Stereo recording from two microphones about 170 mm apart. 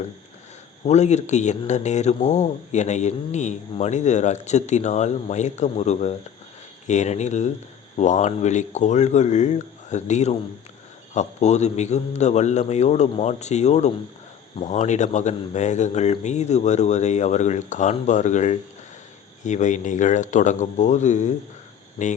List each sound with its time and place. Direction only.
0.9 s a man's voice: 40° left (ahead or behind)